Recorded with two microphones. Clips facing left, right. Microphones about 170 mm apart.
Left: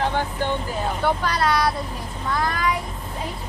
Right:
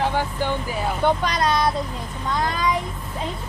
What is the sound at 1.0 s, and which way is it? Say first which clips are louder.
Speech: right 2 dB; 20° right (ahead or behind).